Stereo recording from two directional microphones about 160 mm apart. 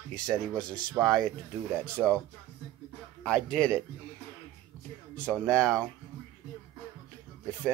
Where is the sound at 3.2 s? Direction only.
5° left (ahead or behind).